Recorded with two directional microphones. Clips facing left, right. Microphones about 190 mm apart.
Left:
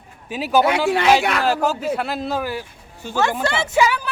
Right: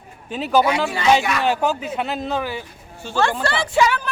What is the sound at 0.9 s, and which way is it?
Speech, 65° left (ahead or behind).